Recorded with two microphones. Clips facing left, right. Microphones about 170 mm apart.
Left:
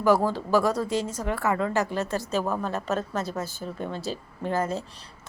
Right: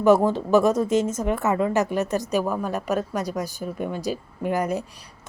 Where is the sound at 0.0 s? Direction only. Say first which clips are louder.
Right 4 dB; 20° right (ahead or behind).